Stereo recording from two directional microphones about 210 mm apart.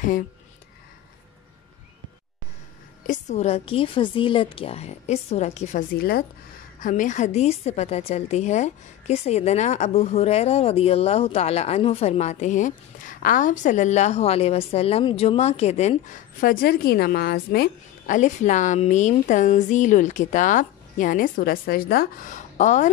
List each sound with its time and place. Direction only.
3.1 s a woman's voice: 35° left (ahead or behind)